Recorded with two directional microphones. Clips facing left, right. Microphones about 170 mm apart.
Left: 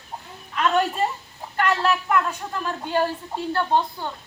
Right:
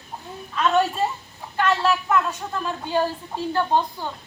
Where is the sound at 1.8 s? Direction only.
Centre (ahead or behind).